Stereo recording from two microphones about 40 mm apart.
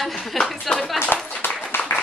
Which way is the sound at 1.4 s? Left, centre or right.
Left.